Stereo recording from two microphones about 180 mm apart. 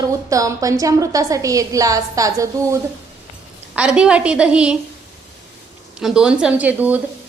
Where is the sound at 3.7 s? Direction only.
5° right (ahead or behind).